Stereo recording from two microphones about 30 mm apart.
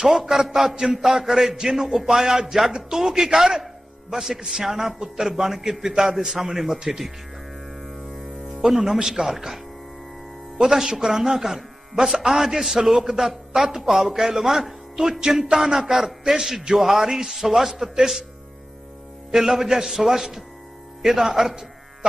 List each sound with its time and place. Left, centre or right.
0.1 s speech: centre
4.9 s a man's voice: right
5.2 s speech: centre
5.9 s a man's voice: right
6.7 s a man's voice: right
7.8 s music: centre
8.4 s music: centre
9.0 s speech: centre
10.6 s speech: centre
19.3 s speech: centre